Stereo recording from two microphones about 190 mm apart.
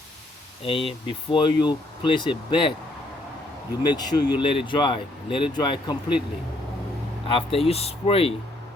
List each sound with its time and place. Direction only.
0.6 s speech: 30° left (ahead or behind)
3.8 s speech: 20° left (ahead or behind)
7.3 s speech: 30° left (ahead or behind)